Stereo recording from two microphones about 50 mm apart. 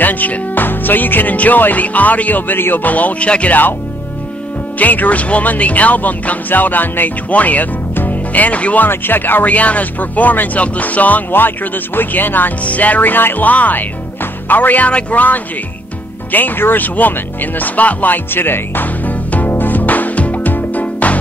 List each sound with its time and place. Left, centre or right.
0.0 s speech: left
4.7 s speech: left
8.8 s speech: left
19.0 s music: left